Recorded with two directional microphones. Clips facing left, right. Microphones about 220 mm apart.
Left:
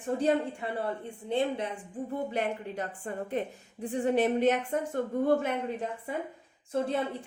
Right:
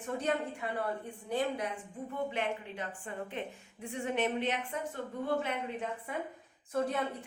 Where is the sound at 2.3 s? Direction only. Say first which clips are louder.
Left 4 dB; 40° left (ahead or behind).